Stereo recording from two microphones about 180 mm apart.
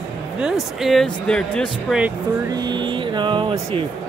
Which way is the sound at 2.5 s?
25° right (ahead or behind).